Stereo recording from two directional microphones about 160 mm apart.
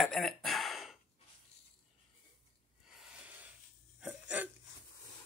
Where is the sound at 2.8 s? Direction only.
5° right (ahead or behind).